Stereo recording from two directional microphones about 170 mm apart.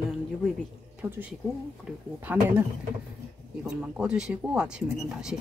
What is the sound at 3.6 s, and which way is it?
Speech, 10° right (ahead or behind).